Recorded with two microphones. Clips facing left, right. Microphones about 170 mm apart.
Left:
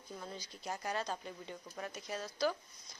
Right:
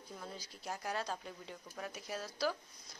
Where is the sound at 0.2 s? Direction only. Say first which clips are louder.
Left 1 dB; centre (ahead or behind).